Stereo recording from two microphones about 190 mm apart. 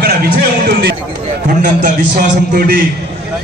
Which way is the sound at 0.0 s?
55° right (ahead or behind).